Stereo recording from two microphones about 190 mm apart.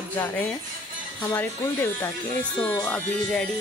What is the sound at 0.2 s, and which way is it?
A woman's voice, 10° left (ahead or behind).